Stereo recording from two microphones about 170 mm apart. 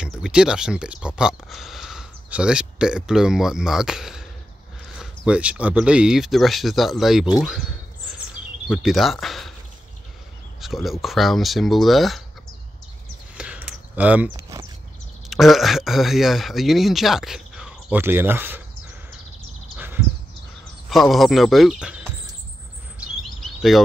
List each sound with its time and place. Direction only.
0.0 s speech: 5° right (ahead or behind)
8.6 s speech: centre (ahead or behind)
10.6 s speech: centre (ahead or behind)
13.4 s a sound: 5° right (ahead or behind)
14.3 s a sound: 20° right (ahead or behind)
15.2 s speech: centre (ahead or behind)
20.9 s speech: centre (ahead or behind)